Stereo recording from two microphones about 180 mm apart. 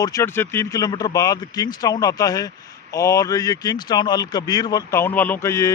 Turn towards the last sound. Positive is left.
turn(degrees=15)  # may be behind; listen again after turning